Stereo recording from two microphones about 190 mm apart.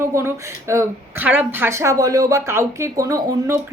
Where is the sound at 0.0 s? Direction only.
15° right (ahead or behind).